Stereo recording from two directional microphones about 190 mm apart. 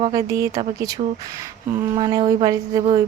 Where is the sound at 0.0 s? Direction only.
20° right (ahead or behind).